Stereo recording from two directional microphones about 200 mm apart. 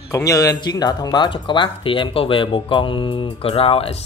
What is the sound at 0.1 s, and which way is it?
Speech, 15° left (ahead or behind).